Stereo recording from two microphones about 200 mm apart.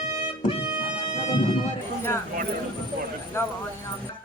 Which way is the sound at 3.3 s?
15° left (ahead or behind).